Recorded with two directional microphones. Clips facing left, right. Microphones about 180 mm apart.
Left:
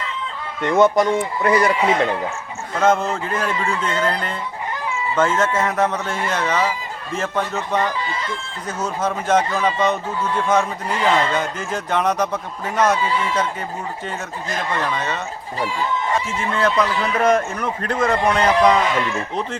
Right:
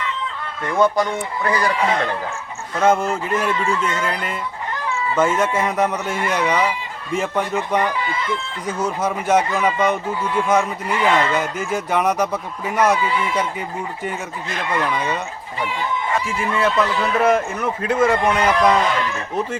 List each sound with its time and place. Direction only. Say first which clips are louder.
0.6 s speech: left 3 dB; 20° left (ahead or behind)
2.8 s speech: right 1 dB; 10° right (ahead or behind)
3.8 s speech: left 2 dB; 30° left (ahead or behind)
5.1 s speech: even; 10° right (ahead or behind)
14.7 s speech: right 3 dB; 10° right (ahead or behind)
16.4 s speech: right 1 dB; 5° right (ahead or behind)